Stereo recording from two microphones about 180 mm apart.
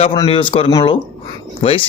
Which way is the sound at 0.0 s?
30° left (ahead or behind).